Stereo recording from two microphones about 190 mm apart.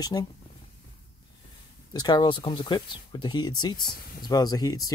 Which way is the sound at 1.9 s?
20° left (ahead or behind).